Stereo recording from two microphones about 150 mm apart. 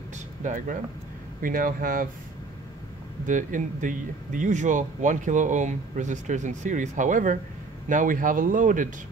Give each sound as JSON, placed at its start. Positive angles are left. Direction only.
{"t": 0.4, "sound": "speech", "side_deg": -60}
{"t": 3.3, "sound": "speech", "side_deg": -60}